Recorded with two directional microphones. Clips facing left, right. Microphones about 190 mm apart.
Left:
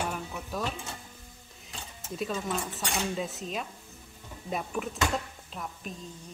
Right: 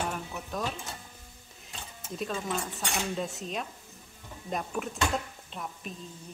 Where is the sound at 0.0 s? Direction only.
Centre (ahead or behind).